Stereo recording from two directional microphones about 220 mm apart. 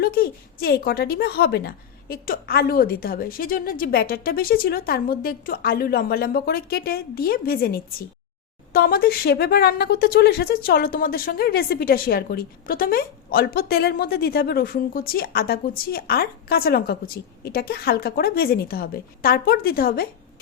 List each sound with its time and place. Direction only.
0.0 s speech: 45° left (ahead or behind)